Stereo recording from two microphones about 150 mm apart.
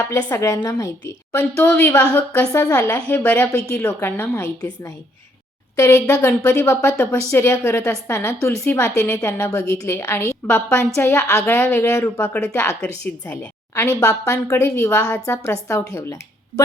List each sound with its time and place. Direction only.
0.1 s a woman's voice: 15° left (ahead or behind)